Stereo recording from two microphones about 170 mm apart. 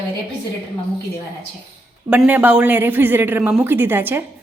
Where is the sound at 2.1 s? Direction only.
10° right (ahead or behind).